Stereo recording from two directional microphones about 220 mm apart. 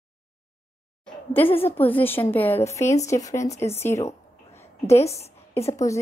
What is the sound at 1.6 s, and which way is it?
A woman's voice, 10° left (ahead or behind).